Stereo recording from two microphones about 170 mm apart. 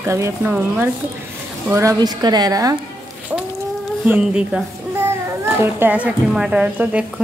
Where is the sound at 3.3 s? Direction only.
10° right (ahead or behind).